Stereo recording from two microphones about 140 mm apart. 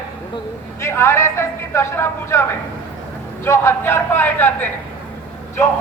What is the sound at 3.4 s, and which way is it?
A man's voice, 20° left (ahead or behind).